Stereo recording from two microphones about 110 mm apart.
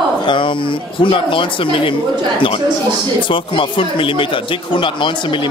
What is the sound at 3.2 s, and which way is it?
Speech, 50° left (ahead or behind).